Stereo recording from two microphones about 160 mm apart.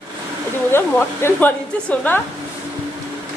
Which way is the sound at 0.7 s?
15° left (ahead or behind).